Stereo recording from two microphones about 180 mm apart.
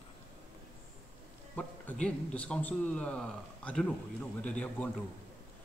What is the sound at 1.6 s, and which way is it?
A man's voice, 5° left (ahead or behind).